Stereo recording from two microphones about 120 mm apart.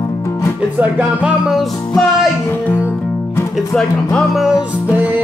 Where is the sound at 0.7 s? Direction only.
10° right (ahead or behind).